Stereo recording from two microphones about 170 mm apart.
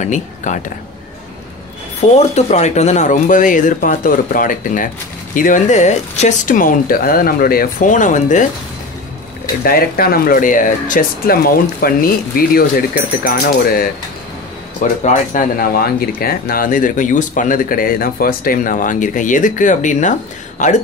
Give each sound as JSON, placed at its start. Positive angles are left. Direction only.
{"t": 0.0, "sound": "speech", "side_deg": 45}
{"t": 2.0, "sound": "speech", "side_deg": 40}
{"t": 9.6, "sound": "speech", "side_deg": 60}